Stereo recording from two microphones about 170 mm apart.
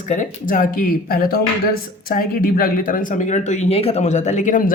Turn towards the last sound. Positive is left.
turn(degrees=50)  # may be behind; listen again after turning